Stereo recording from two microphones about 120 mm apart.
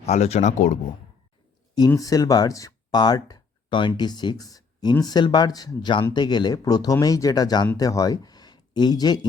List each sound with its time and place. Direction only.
0.0 s speech: 65° left (ahead or behind)
2.0 s speech: 30° left (ahead or behind)